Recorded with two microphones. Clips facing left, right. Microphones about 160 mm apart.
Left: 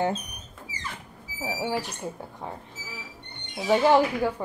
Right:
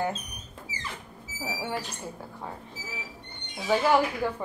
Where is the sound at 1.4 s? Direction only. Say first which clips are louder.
Left 4 dB; 20° left (ahead or behind).